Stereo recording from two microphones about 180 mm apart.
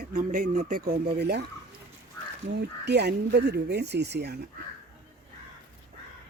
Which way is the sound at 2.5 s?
70° right (ahead or behind).